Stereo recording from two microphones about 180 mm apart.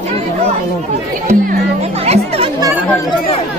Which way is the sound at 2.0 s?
35° right (ahead or behind).